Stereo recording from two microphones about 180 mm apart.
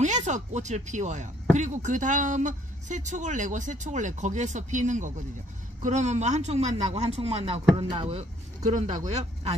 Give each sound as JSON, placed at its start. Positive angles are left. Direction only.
{"t": 0.0, "sound": "speech", "side_deg": -40}